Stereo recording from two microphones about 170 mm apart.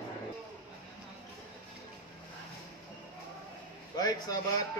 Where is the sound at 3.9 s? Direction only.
20° left (ahead or behind).